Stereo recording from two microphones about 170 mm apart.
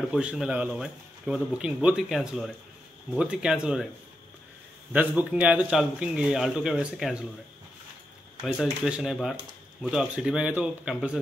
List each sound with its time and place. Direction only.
0.1 s speech: 5° right (ahead or behind)
4.9 s speech: 10° right (ahead or behind)
8.4 s speech: 5° right (ahead or behind)